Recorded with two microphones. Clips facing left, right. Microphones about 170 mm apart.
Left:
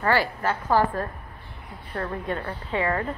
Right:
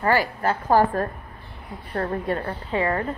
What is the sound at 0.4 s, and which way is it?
A woman's voice, 40° right (ahead or behind).